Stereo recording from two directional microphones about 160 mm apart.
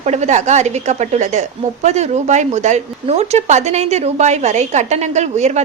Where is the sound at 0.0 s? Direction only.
45° right (ahead or behind).